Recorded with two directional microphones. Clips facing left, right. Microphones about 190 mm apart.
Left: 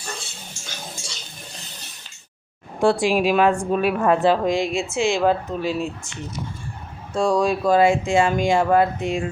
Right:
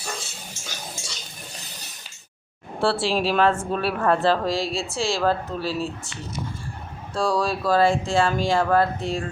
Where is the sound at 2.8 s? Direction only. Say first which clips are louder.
Left 4 dB; 15° left (ahead or behind).